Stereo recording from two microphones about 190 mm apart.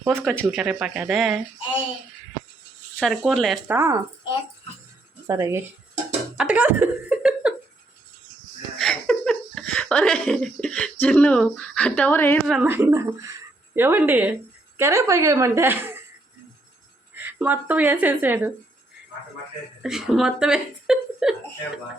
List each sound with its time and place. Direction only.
0.0 s speech: centre (ahead or behind)
3.0 s speech: centre (ahead or behind)
3.8 s speech: 15° right (ahead or behind)
5.2 s speech: 15° right (ahead or behind)
8.8 s speech: 5° left (ahead or behind)
12.6 s speech: 10° right (ahead or behind)
17.2 s speech: 10° right (ahead or behind)
19.8 s speech: centre (ahead or behind)